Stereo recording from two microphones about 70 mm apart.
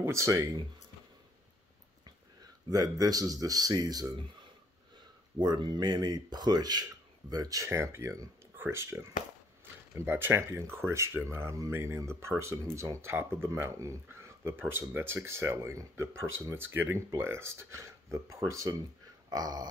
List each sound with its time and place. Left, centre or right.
0.0 s speech: right
2.7 s speech: right
5.4 s speech: right
10.5 s speech: right
14.2 s speech: right
19.2 s a sound: right